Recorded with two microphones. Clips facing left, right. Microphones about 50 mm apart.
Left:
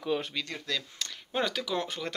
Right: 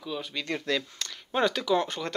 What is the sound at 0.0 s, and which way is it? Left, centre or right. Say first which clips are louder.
Speech: left 4 dB; left.